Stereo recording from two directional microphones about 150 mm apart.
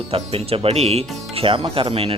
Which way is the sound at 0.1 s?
40° right (ahead or behind).